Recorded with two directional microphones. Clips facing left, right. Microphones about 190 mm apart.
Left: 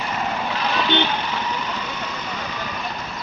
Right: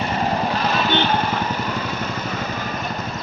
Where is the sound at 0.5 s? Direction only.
45° right (ahead or behind).